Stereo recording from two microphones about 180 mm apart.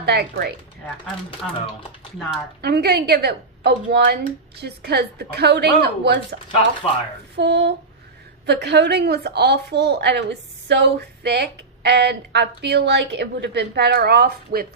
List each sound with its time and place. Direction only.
0.0 s a woman's voice: 65° right (ahead or behind)
2.6 s a woman's voice: 65° right (ahead or behind)
6.8 s speech: 35° left (ahead or behind)
7.3 s a woman's voice: 75° right (ahead or behind)